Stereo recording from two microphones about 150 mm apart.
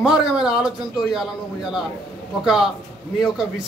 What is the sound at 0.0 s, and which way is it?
A man's voice, 5° right (ahead or behind).